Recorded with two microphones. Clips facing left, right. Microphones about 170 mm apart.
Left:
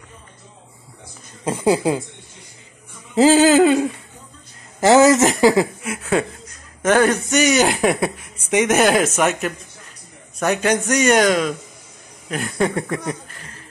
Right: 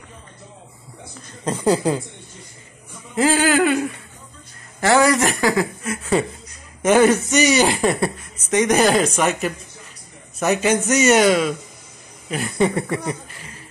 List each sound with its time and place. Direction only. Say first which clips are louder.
1.4 s speech: left 1 dB; 10° left (ahead or behind)
3.2 s speech: left 5 dB; 25° left (ahead or behind)
6.8 s speech: right 2 dB; 5° right (ahead or behind)